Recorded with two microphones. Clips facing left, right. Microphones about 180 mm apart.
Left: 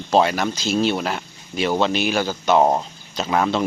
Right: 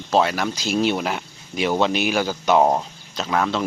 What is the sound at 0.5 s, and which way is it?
Speech, 10° right (ahead or behind).